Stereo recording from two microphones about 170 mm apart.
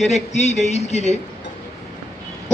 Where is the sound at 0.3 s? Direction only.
40° left (ahead or behind).